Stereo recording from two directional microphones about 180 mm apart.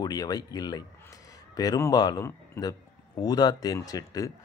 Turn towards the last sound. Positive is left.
turn(degrees=20)  # may be behind; listen again after turning